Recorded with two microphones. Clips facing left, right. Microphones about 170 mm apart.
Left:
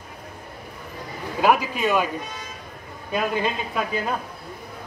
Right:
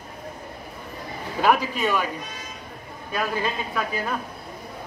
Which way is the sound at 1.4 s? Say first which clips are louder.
Left 1 dB; 10° left (ahead or behind).